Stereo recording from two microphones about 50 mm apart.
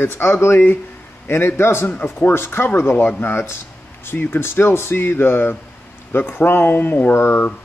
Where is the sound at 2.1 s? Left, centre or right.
Left.